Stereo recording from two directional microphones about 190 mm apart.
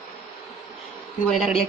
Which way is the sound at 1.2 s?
Centre (ahead or behind).